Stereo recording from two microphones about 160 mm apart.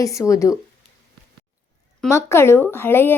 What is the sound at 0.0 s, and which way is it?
Speech, 20° left (ahead or behind).